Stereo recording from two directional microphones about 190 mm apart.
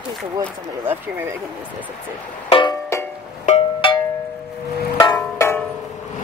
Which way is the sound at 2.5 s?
25° left (ahead or behind).